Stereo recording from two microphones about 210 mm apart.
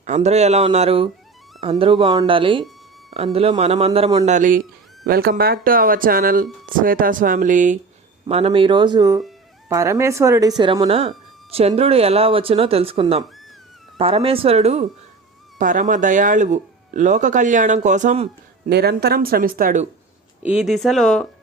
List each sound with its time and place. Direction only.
0.0 s speech: 35° right (ahead or behind); by 10.5 s 15° right (ahead or behind)
10.6 s speech: 25° right (ahead or behind)
18.7 s speech: 50° right (ahead or behind)
20.4 s speech: 5° right (ahead or behind)